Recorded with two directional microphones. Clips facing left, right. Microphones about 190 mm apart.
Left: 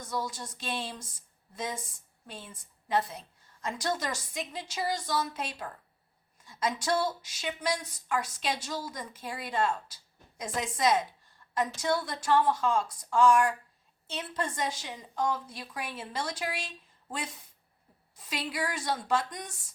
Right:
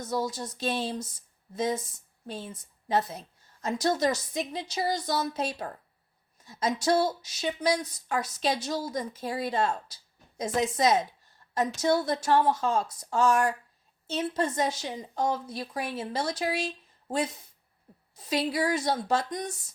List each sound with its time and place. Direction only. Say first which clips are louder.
0.3 s a woman's voice: right 6 dB; 40° right (ahead or behind)